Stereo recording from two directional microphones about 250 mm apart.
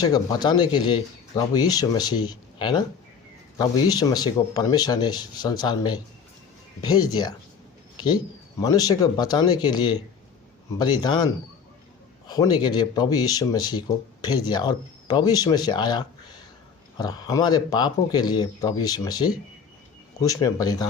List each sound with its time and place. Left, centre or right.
0.0 s speech: centre
8.6 s speech: centre
12.3 s speech: centre